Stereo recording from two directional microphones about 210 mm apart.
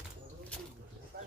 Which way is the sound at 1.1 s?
45° right (ahead or behind).